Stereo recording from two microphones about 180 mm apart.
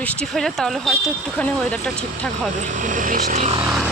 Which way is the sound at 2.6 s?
45° right (ahead or behind).